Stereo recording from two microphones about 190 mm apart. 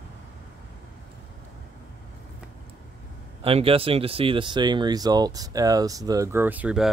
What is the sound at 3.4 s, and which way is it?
Speech, 30° right (ahead or behind).